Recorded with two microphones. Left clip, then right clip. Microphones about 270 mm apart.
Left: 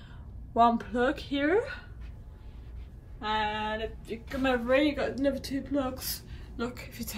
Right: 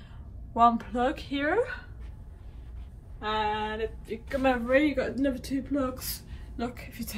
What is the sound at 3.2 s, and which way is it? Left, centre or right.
A woman's voice, centre.